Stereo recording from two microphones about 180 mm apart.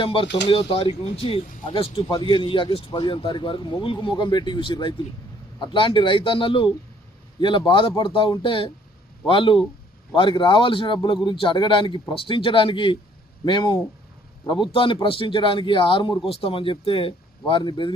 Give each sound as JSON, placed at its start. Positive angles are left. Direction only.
{"t": 0.0, "sound": "speech", "side_deg": 30}